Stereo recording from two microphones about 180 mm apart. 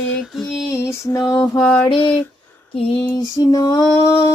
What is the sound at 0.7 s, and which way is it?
Female singing, 15° left (ahead or behind).